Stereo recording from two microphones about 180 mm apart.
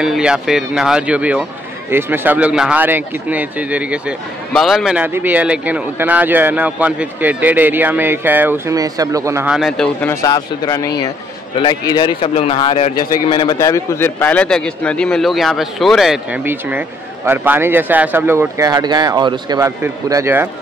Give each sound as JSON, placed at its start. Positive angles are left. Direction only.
{"t": 0.0, "sound": "a man's voice", "side_deg": -5}
{"t": 9.5, "sound": "a man's voice", "side_deg": 0}
{"t": 10.2, "sound": "a man's voice", "side_deg": 20}